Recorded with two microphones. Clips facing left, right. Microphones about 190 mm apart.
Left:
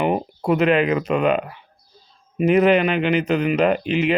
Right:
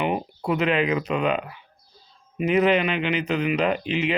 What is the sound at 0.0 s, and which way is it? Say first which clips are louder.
Speech: left 4 dB; 45° left (ahead or behind).